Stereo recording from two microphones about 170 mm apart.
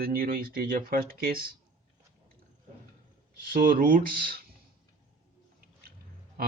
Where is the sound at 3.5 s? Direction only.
55° right (ahead or behind).